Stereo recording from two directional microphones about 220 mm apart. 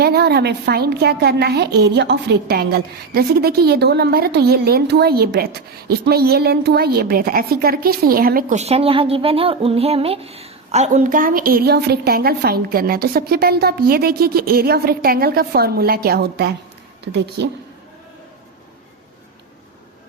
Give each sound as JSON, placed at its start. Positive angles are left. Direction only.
{"t": 0.0, "sound": "a woman's voice", "side_deg": -45}